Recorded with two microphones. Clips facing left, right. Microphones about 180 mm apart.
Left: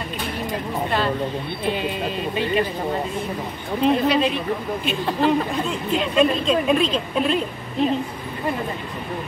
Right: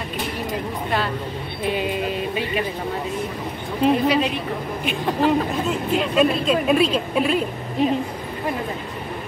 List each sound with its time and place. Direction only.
3.8 s speech: 10° right (ahead or behind)